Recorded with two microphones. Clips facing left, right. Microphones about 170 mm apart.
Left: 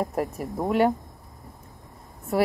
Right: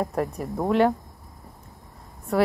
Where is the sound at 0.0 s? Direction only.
5° left (ahead or behind).